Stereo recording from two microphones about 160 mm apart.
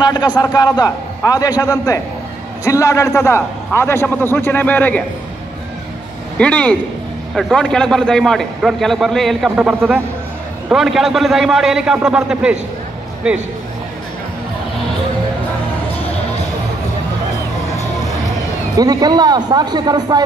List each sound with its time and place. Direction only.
0.0 s a man's voice: 25° left (ahead or behind); by 5.0 s 10° left (ahead or behind)
6.3 s a man's voice: 10° left (ahead or behind)
18.8 s speech: 25° right (ahead or behind)